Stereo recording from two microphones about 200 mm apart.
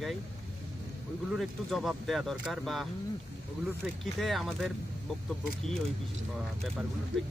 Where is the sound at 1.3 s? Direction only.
Centre (ahead or behind).